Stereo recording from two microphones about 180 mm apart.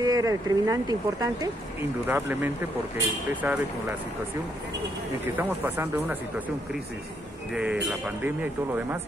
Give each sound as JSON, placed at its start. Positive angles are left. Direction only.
{"t": 0.0, "sound": "speech", "side_deg": -20}
{"t": 5.2, "sound": "speech", "side_deg": -10}
{"t": 7.5, "sound": "speech", "side_deg": -5}